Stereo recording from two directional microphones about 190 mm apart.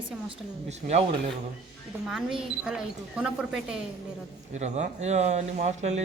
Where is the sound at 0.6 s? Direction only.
35° right (ahead or behind).